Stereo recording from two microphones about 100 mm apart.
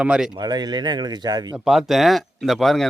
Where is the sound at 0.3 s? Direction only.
45° right (ahead or behind).